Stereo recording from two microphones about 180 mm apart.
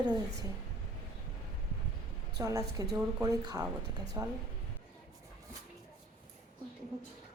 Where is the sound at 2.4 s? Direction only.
20° right (ahead or behind).